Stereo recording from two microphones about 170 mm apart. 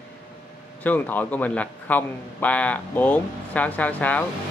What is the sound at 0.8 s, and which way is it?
Speech, 10° left (ahead or behind).